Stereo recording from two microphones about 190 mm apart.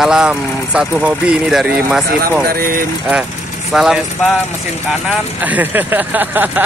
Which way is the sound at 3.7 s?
Centre (ahead or behind).